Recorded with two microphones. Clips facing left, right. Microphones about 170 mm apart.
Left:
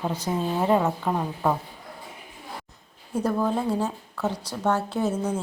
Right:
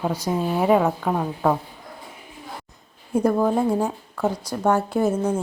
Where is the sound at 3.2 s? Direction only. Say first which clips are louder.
Right 5 dB; 15° right (ahead or behind).